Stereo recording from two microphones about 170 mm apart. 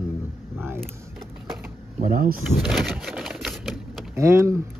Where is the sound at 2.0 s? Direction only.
55° right (ahead or behind).